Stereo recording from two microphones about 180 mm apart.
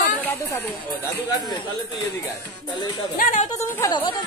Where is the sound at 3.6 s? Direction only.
15° left (ahead or behind).